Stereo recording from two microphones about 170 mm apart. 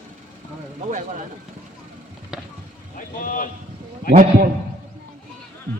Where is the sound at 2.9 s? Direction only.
55° left (ahead or behind).